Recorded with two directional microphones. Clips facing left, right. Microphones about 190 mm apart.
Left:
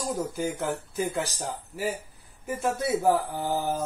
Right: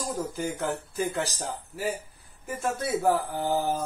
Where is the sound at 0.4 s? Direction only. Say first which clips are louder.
Left 1 dB; 10° left (ahead or behind).